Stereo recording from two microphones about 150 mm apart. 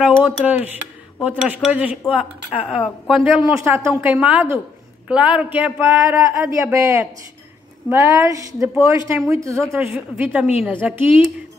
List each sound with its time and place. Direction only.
0.5 s speech: 10° right (ahead or behind)
3.5 s speech: 20° right (ahead or behind)